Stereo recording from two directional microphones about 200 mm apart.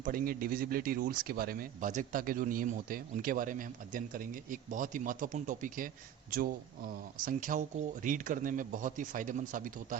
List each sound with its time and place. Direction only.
0.0 s speech: 45° right (ahead or behind)